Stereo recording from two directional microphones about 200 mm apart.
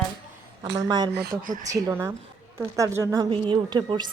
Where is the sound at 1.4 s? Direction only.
40° right (ahead or behind).